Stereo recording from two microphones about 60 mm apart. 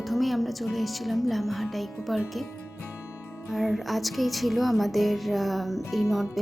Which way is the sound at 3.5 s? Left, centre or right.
Centre.